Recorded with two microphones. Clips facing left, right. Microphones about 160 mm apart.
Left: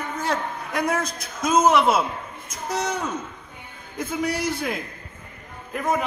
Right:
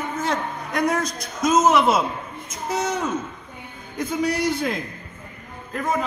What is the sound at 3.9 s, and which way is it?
Speech, 5° left (ahead or behind).